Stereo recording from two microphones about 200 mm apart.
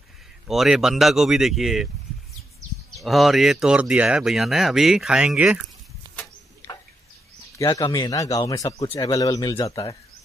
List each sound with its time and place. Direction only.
0.5 s speech: centre (ahead or behind)
3.0 s speech: centre (ahead or behind)
7.5 s speech: 20° left (ahead or behind)